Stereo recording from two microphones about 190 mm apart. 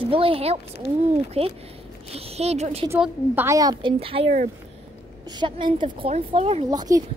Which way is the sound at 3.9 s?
30° right (ahead or behind).